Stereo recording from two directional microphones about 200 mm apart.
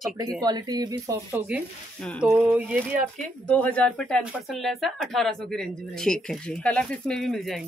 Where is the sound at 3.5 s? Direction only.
5° left (ahead or behind).